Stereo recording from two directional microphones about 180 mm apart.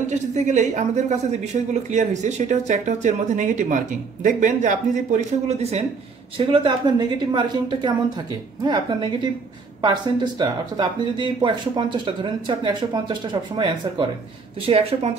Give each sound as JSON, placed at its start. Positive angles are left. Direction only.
{"t": 0.0, "sound": "speech", "side_deg": -40}